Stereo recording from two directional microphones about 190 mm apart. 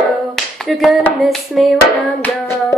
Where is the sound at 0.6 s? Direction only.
Centre (ahead or behind).